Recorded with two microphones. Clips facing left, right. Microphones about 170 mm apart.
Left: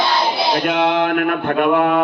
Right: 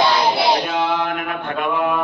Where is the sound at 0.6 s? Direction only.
70° left (ahead or behind).